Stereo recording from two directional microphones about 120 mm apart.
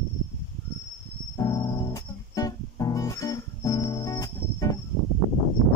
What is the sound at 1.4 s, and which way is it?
Music, 30° left (ahead or behind).